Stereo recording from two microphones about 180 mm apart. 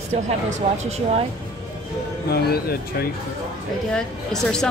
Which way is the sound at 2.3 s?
60° left (ahead or behind).